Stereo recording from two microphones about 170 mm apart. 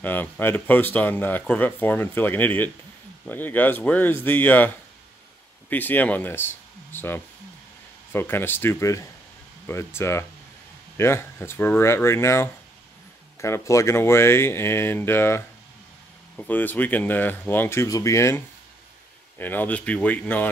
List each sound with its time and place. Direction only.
0.0 s speech: 10° left (ahead or behind)